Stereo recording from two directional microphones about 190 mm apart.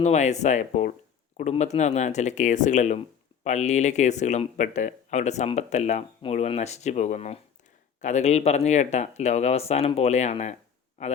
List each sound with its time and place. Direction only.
0.0 s speech: 35° left (ahead or behind)